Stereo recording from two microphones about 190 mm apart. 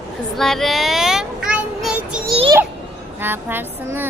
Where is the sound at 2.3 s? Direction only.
30° right (ahead or behind).